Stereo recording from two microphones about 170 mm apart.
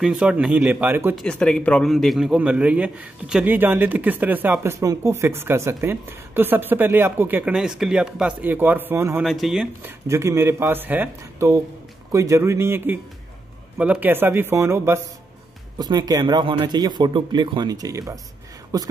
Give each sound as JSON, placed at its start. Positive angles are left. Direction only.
{"t": 0.0, "sound": "a man's voice", "side_deg": -5}
{"t": 1.1, "sound": "a man's voice", "side_deg": 5}
{"t": 9.2, "sound": "speech", "side_deg": 0}
{"t": 9.8, "sound": "a man's voice", "side_deg": -15}